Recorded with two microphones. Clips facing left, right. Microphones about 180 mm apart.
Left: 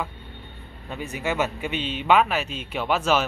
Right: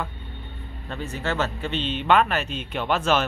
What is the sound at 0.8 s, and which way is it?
Speech, 10° left (ahead or behind).